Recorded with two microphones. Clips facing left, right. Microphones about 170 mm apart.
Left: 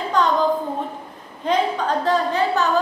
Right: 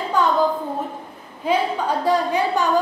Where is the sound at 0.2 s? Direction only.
10° right (ahead or behind).